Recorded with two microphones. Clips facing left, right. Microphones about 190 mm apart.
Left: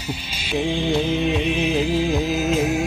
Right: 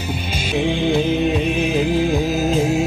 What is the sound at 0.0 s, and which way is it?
Music, 55° right (ahead or behind).